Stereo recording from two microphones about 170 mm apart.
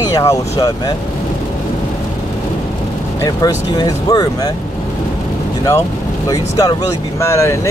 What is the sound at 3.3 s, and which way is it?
Speech, 25° left (ahead or behind).